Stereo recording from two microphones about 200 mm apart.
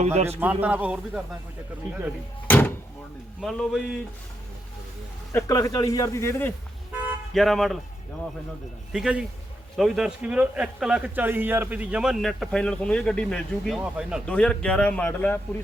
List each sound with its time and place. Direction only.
0.0 s a man's voice: 35° right (ahead or behind)
0.3 s speech: 10° right (ahead or behind)
2.5 s door: 10° left (ahead or behind)
3.4 s a man's voice: centre (ahead or behind)
5.3 s speech: 15° left (ahead or behind)
7.3 s a man's voice: centre (ahead or behind)
8.9 s a man's voice: 5° right (ahead or behind)